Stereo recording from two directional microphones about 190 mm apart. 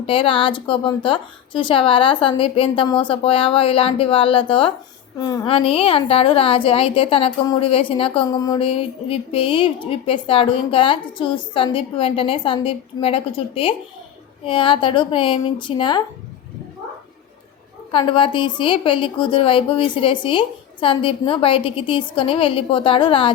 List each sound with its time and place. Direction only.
0.0 s a woman's voice: 25° left (ahead or behind)
17.9 s a woman's voice: 25° left (ahead or behind)